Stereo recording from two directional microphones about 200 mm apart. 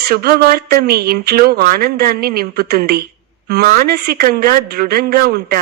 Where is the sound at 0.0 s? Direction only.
50° right (ahead or behind).